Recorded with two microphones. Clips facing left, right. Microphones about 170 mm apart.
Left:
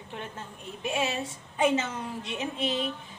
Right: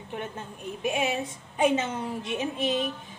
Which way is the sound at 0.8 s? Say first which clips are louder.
Right 2 dB; 15° right (ahead or behind).